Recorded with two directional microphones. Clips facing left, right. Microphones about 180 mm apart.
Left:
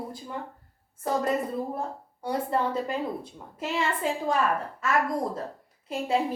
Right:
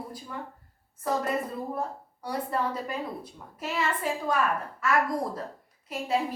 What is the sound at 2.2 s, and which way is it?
A woman's voice, 25° left (ahead or behind).